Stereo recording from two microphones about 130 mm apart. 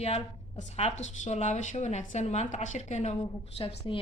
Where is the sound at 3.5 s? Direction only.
45° left (ahead or behind).